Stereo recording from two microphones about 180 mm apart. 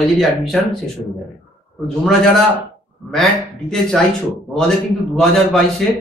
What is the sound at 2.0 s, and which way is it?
A man's voice, centre (ahead or behind).